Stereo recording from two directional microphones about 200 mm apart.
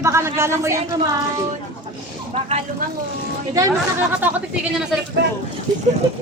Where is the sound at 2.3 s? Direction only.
30° right (ahead or behind).